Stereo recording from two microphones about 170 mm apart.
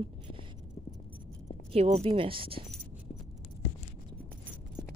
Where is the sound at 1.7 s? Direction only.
35° right (ahead or behind).